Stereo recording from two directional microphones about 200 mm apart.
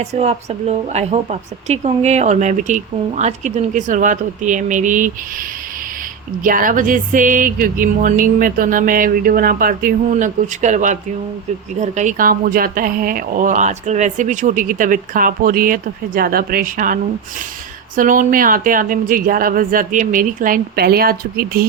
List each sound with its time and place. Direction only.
0.0 s a woman's voice: 35° right (ahead or behind)
6.4 s a woman's voice: 45° right (ahead or behind)